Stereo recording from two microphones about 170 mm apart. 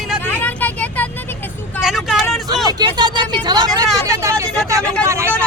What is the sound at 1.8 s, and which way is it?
Vehicle, centre (ahead or behind).